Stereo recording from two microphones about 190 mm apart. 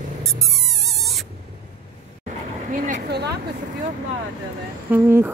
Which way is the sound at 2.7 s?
50° right (ahead or behind).